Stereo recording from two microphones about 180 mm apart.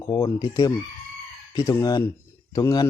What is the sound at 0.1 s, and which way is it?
Speech, 20° left (ahead or behind).